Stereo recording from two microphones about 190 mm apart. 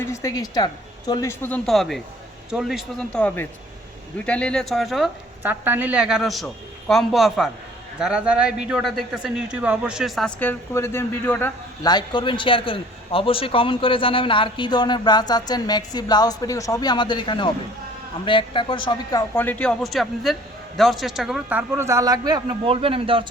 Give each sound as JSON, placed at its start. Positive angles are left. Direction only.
{"t": 0.0, "sound": "a man's voice", "side_deg": 15}
{"t": 11.9, "sound": "a man's voice", "side_deg": 25}
{"t": 19.3, "sound": "a man's voice", "side_deg": 10}
{"t": 21.7, "sound": "a man's voice", "side_deg": -15}